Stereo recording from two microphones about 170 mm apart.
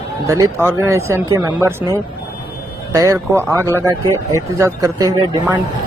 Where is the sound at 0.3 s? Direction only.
15° right (ahead or behind).